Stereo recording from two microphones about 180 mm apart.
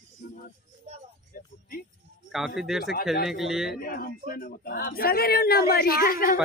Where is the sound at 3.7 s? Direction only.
55° left (ahead or behind).